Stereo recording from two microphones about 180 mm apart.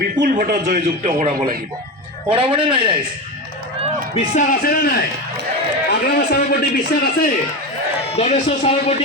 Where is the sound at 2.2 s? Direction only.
30° right (ahead or behind).